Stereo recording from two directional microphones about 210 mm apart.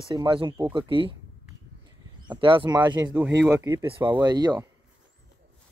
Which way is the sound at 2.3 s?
25° right (ahead or behind).